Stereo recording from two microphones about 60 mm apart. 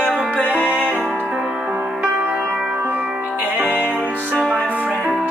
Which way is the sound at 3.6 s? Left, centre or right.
Right.